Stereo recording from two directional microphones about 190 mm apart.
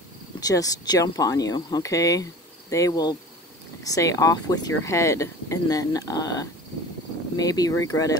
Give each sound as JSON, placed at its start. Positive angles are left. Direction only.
{"t": 0.4, "sound": "speech", "side_deg": 20}